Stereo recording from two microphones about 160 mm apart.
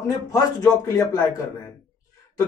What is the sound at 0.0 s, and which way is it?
A man's voice, 20° left (ahead or behind).